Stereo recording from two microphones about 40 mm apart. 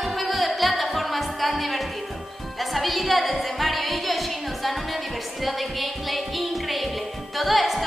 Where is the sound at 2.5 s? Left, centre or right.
Centre.